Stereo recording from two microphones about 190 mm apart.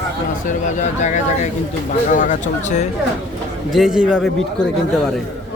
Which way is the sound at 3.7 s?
Centre (ahead or behind).